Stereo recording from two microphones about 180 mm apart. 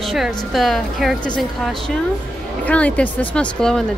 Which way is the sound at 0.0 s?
Centre (ahead or behind).